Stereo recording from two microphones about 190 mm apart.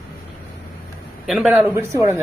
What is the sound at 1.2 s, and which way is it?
Speech, centre (ahead or behind).